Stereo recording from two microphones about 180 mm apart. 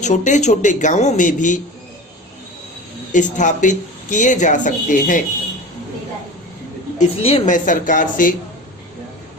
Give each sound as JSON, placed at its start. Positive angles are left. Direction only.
{"t": 0.0, "sound": "speech", "side_deg": 40}
{"t": 3.1, "sound": "speech", "side_deg": 45}
{"t": 7.2, "sound": "speech", "side_deg": 35}